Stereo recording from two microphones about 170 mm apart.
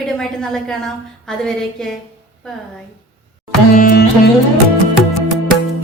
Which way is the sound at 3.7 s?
55° left (ahead or behind).